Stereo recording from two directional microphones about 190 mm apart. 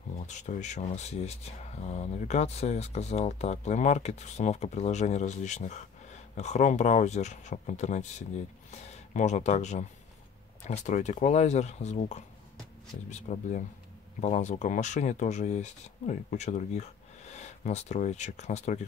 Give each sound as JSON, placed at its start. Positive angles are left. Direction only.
{"t": 0.3, "sound": "speech", "side_deg": 40}